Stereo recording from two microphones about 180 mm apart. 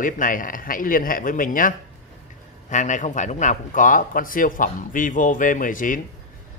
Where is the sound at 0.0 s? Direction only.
50° left (ahead or behind).